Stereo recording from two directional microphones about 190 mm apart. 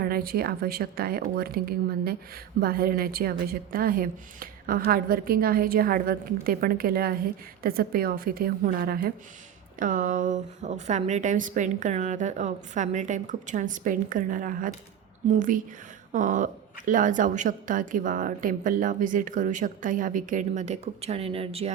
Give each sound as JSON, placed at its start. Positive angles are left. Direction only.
{"t": 0.0, "sound": "a woman's voice", "side_deg": -50}